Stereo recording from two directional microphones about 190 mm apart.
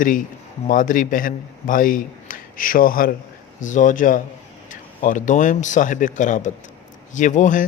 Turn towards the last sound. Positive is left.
turn(degrees=40)  # may be behind; listen again after turning